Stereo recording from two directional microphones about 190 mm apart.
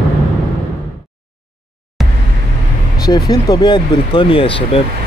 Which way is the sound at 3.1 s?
20° left (ahead or behind).